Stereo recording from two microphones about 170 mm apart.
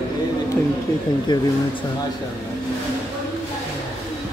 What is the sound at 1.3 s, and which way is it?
Speech, 25° left (ahead or behind).